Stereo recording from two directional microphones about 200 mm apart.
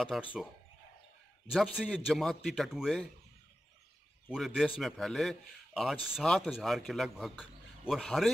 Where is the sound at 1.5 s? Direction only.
Centre (ahead or behind).